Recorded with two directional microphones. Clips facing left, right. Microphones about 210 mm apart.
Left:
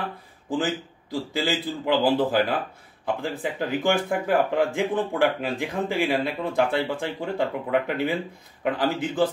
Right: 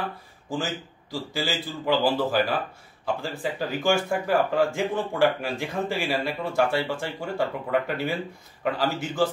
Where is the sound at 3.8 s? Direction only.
20° left (ahead or behind).